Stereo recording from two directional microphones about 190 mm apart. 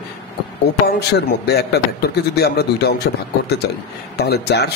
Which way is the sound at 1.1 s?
60° left (ahead or behind).